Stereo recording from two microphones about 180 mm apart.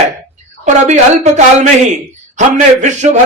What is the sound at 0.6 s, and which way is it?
Speech, 40° right (ahead or behind).